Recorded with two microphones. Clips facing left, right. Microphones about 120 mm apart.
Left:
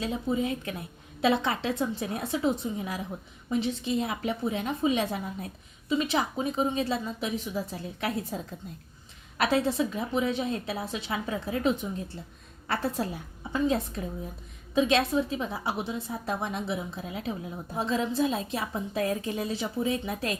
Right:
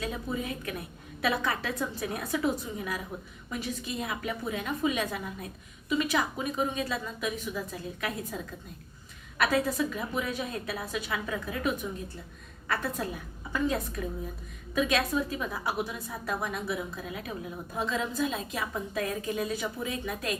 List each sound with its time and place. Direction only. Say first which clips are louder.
0.0 s a woman's voice: left 5 dB; 25° left (ahead or behind)